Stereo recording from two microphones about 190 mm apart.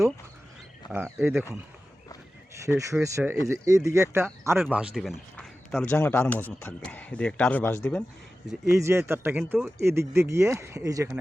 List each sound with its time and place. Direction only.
0.8 s speech: 20° left (ahead or behind)
1.2 s speech: 10° right (ahead or behind)
2.7 s a man's voice: 15° right (ahead or behind); by 8.0 s 10° left (ahead or behind)
8.8 s speech: 15° right (ahead or behind)